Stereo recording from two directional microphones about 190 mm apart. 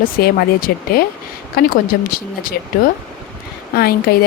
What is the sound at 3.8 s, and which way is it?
Speech, 55° left (ahead or behind).